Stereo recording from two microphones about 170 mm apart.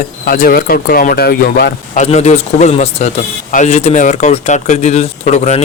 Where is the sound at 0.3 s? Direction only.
60° left (ahead or behind).